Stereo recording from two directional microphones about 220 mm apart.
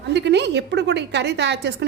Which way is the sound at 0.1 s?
50° right (ahead or behind).